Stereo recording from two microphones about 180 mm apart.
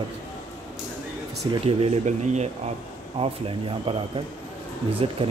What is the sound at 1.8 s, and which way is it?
Speech, 40° right (ahead or behind).